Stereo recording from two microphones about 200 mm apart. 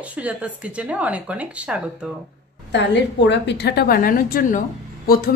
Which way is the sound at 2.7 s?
60° left (ahead or behind).